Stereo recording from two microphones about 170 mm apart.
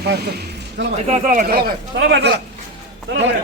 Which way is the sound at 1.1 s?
50° right (ahead or behind).